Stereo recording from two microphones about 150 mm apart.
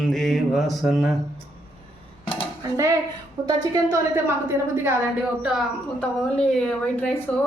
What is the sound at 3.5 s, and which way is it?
A woman's voice, 20° right (ahead or behind).